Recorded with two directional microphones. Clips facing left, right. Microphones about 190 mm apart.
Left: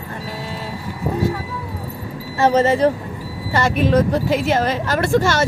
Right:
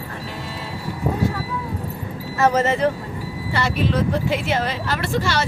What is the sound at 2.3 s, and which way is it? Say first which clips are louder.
A woman's voice: left 3 dB; 30° left (ahead or behind).